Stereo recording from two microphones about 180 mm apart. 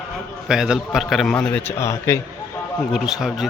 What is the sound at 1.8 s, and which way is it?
Speech, 15° left (ahead or behind).